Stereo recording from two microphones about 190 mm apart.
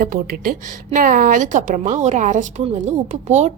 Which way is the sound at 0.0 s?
45° right (ahead or behind).